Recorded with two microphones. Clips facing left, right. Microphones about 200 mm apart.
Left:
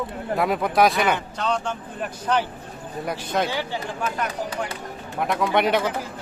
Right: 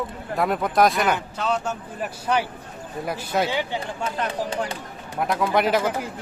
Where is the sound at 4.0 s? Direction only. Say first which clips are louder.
Right 1 dB; 30° right (ahead or behind).